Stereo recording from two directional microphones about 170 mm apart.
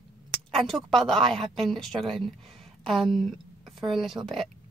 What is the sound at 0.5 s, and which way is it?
A woman's voice, centre (ahead or behind).